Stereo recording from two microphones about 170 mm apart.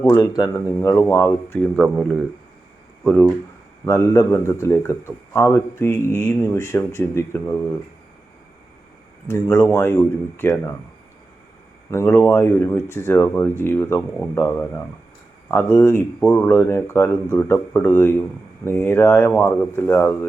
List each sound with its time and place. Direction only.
0.0 s speech: 15° left (ahead or behind)
1.6 s speech: centre (ahead or behind)
3.8 s speech: 15° left (ahead or behind)
9.2 s speech: 15° left (ahead or behind)
11.9 s speech: 15° left (ahead or behind)